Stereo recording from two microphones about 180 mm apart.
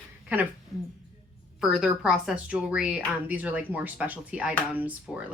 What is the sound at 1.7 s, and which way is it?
Speech, centre (ahead or behind).